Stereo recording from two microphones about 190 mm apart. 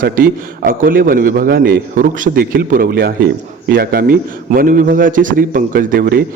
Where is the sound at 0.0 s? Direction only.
45° right (ahead or behind).